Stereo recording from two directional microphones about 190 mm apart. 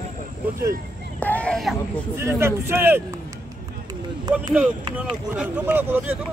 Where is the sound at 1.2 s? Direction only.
10° left (ahead or behind).